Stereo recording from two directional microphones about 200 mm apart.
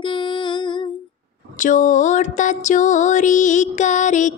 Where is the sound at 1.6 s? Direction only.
40° left (ahead or behind).